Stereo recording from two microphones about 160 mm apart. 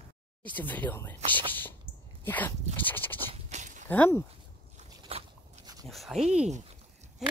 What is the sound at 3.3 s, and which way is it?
Walk, 45° right (ahead or behind).